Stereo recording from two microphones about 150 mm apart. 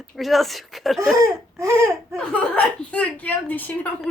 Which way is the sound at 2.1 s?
5° left (ahead or behind).